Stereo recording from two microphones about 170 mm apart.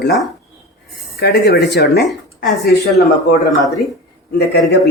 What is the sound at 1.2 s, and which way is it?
Speech, 75° left (ahead or behind).